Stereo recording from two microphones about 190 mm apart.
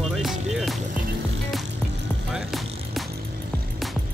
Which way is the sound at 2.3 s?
Centre (ahead or behind).